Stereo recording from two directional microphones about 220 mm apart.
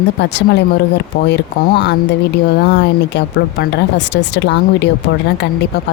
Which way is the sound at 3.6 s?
50° left (ahead or behind).